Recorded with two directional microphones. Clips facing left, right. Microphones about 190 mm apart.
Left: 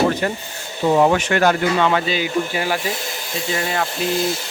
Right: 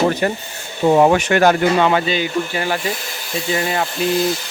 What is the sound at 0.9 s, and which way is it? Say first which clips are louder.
Speech: right 3 dB; 25° right (ahead or behind).